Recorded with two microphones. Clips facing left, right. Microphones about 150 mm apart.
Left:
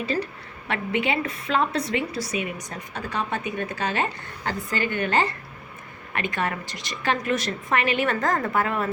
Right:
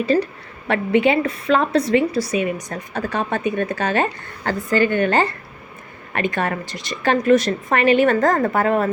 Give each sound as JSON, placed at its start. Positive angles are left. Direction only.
{"t": 0.7, "sound": "a woman's voice", "side_deg": -40}
{"t": 2.9, "sound": "a woman's voice", "side_deg": -50}
{"t": 6.1, "sound": "a woman's voice", "side_deg": -40}